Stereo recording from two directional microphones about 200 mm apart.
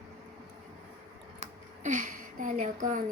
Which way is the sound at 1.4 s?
40° right (ahead or behind).